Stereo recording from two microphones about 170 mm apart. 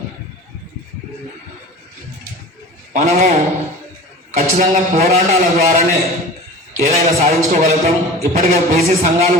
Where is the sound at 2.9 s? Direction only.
50° right (ahead or behind).